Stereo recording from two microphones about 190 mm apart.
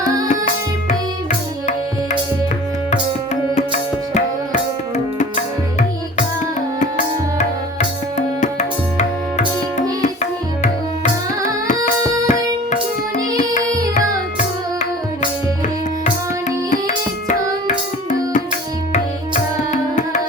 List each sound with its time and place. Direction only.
3.5 s music: 40° left (ahead or behind)
7.3 s tabla: 40° left (ahead or behind)
12.3 s music: 40° left (ahead or behind)
16.6 s music: 40° left (ahead or behind)
19.3 s music: 40° left (ahead or behind)